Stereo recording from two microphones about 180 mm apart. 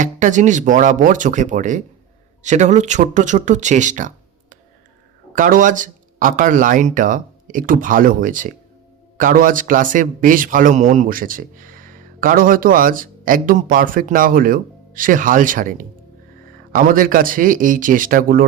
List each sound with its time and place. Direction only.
0.0 s a man's voice: 45° right (ahead or behind)